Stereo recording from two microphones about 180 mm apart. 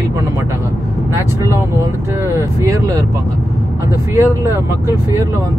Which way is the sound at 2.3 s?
15° right (ahead or behind).